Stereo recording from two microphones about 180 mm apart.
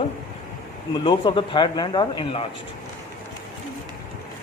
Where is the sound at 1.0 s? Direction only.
25° left (ahead or behind).